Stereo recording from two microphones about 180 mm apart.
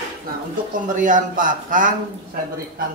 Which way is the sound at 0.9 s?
45° right (ahead or behind).